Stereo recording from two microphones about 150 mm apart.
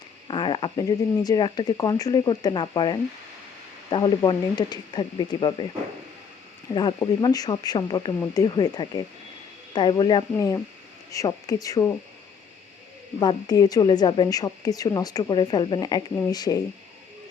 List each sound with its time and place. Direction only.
0.3 s a woman's voice: 35° left (ahead or behind)
6.7 s a woman's voice: 30° left (ahead or behind)
10.3 s a woman's voice: 20° left (ahead or behind)
13.1 s a woman's voice: 25° left (ahead or behind)